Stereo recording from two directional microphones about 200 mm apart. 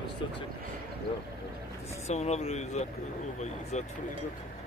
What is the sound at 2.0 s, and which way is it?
Speech, 35° left (ahead or behind).